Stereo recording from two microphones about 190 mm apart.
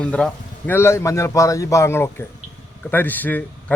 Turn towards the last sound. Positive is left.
turn(degrees=10)  # may be behind; listen again after turning